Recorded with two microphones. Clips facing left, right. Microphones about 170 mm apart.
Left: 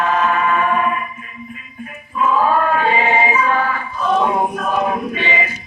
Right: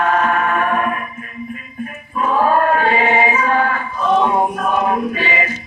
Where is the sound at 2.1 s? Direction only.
45° right (ahead or behind).